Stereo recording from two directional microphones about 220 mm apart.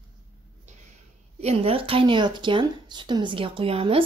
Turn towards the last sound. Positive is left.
turn(degrees=-25)  # may be behind; listen again after turning